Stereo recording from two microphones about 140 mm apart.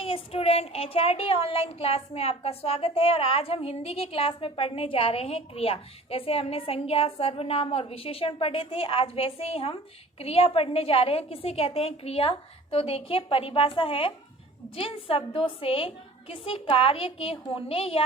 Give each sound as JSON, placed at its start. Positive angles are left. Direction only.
{"t": 0.0, "sound": "child singing", "side_deg": 40}
{"t": 13.3, "sound": "a woman's voice", "side_deg": 40}
{"t": 16.3, "sound": "child singing", "side_deg": 40}